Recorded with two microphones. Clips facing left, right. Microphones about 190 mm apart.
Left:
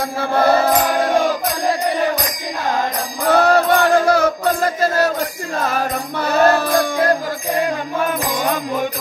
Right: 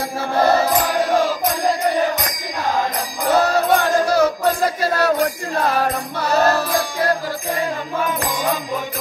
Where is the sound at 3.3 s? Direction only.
60° left (ahead or behind).